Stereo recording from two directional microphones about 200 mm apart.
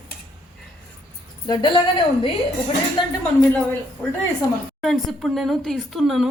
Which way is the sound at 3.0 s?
25° left (ahead or behind).